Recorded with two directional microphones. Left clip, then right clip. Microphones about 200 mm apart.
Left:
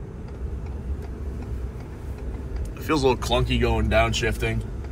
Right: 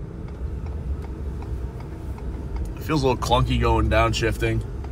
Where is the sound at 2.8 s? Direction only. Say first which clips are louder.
Left 1 dB; 10° right (ahead or behind).